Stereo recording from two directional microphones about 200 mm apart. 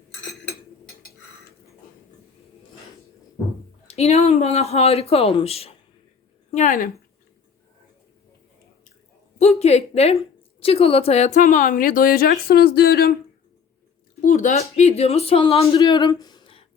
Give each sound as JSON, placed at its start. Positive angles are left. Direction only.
{"t": 3.8, "sound": "a woman's voice", "side_deg": 30}
{"t": 9.4, "sound": "a woman's voice", "side_deg": 30}
{"t": 14.3, "sound": "speech", "side_deg": 35}